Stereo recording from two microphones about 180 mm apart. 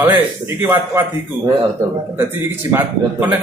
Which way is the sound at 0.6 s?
10° right (ahead or behind).